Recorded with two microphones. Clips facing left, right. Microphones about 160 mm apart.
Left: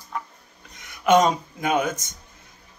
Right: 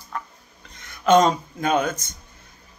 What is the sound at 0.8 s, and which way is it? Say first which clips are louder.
Speech: right 1 dB; 15° left (ahead or behind).